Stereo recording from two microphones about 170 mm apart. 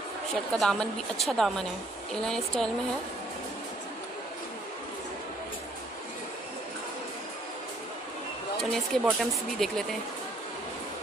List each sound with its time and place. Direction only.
0.6 s speech: 5° left (ahead or behind)
8.5 s speech: centre (ahead or behind)